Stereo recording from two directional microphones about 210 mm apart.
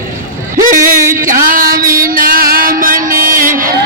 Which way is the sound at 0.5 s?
40° right (ahead or behind).